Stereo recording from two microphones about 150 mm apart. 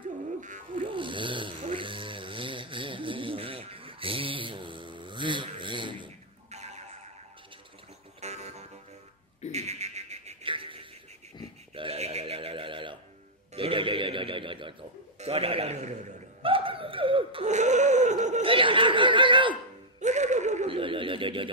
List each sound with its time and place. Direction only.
0.4 s music: 55° right (ahead or behind)
0.8 s snoring: 35° right (ahead or behind)
6.5 s neigh: 45° right (ahead or behind)
8.2 s music: 45° right (ahead or behind)
9.5 s a sound: 45° right (ahead or behind)
11.7 s neigh: 40° right (ahead or behind)
13.6 s a sound: 35° right (ahead or behind)
16.4 s laughter: 35° right (ahead or behind)
17.5 s a sound: 50° right (ahead or behind)
18.4 s snicker: 35° right (ahead or behind)
20.0 s music: 50° right (ahead or behind)
20.7 s neigh: 35° right (ahead or behind)